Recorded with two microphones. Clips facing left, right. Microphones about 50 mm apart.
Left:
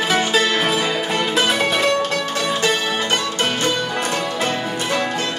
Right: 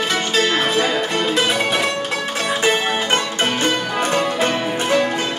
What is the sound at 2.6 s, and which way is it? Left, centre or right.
Music, right.